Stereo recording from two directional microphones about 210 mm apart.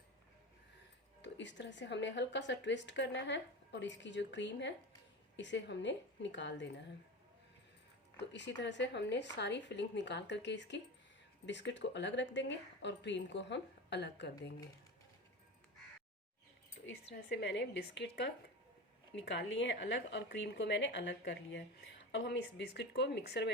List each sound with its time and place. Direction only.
1.2 s a woman's voice: 60° left (ahead or behind)
8.2 s a woman's voice: 55° left (ahead or behind)
16.8 s a woman's voice: 55° left (ahead or behind)